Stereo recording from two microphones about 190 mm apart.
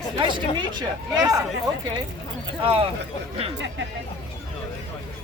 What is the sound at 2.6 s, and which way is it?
Speech, 30° right (ahead or behind).